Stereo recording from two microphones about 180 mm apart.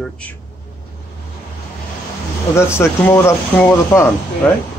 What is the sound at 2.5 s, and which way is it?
Speech, 15° left (ahead or behind).